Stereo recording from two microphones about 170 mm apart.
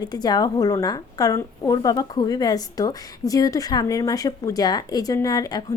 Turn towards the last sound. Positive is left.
turn(degrees=20)  # may be behind; listen again after turning